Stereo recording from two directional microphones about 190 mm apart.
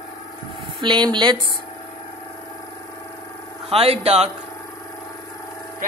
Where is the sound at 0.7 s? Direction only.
25° right (ahead or behind).